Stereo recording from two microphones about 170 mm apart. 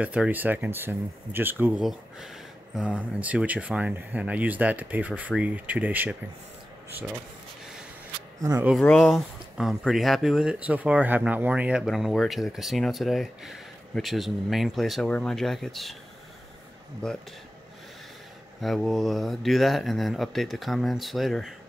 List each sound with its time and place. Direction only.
0.0 s speech: 5° right (ahead or behind)
1.8 s speech: centre (ahead or behind)
8.4 s speech: 20° right (ahead or behind)
8.8 s speech: 5° left (ahead or behind)
17.0 s speech: 5° left (ahead or behind)
18.6 s speech: centre (ahead or behind)